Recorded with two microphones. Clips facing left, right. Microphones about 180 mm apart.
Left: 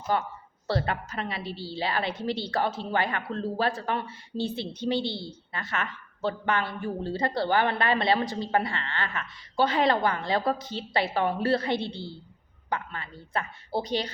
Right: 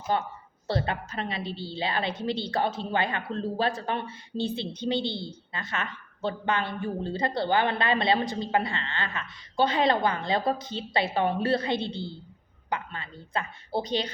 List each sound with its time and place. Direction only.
0.1 s a woman's voice: 25° right (ahead or behind)